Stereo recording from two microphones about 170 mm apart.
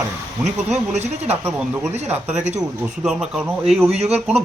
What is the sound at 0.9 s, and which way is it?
Speech, 40° right (ahead or behind).